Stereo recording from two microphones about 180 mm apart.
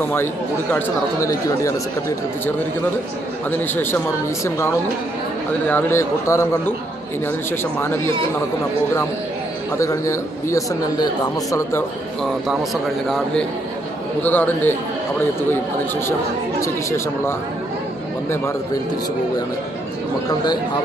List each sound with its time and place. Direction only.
0.0 s speech: 10° left (ahead or behind)
5.7 s speech: 10° left (ahead or behind)
7.8 s speech: 15° left (ahead or behind)
9.8 s speech: 15° left (ahead or behind)
12.2 s a man's voice: centre (ahead or behind)